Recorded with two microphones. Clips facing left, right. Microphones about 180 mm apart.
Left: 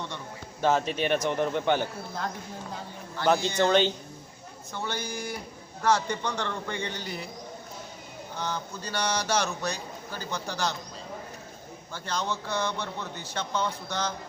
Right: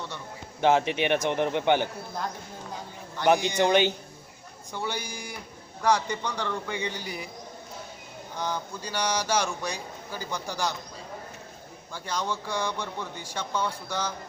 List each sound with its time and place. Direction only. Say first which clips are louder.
0.6 s a man's voice: right 2 dB; 15° right (ahead or behind)
3.2 s a man's voice: right 2 dB; 15° right (ahead or behind)
8.4 s a man's voice: right 2 dB; 10° right (ahead or behind)
11.9 s a man's voice: even; 10° right (ahead or behind)